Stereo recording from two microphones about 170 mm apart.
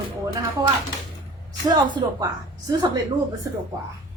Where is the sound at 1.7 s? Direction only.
25° right (ahead or behind).